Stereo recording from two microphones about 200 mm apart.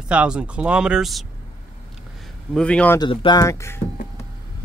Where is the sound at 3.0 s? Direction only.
20° left (ahead or behind).